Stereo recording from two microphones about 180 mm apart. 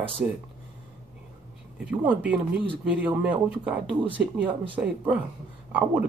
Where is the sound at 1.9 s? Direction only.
10° right (ahead or behind).